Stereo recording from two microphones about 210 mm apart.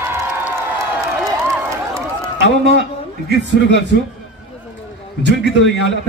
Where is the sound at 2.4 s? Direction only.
55° right (ahead or behind).